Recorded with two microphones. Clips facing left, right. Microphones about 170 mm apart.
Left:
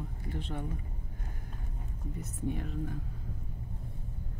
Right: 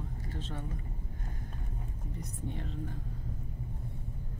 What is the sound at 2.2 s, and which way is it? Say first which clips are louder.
Speech: left 6 dB; 10° left (ahead or behind).